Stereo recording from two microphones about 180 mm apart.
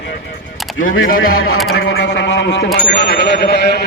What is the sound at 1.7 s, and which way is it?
A man's voice, 90° left.